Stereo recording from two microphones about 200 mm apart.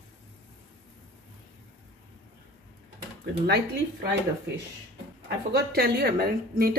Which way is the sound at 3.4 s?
55° right (ahead or behind).